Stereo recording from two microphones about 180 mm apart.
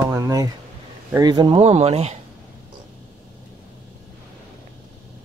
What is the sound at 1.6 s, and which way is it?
Speech, 35° right (ahead or behind).